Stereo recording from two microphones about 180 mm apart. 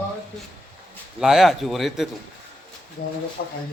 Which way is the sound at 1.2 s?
Centre (ahead or behind).